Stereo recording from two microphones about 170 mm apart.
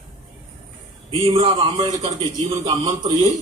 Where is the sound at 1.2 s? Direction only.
30° right (ahead or behind).